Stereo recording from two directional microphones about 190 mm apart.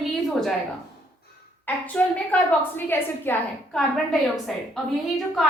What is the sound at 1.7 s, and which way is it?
A woman's voice, 10° left (ahead or behind).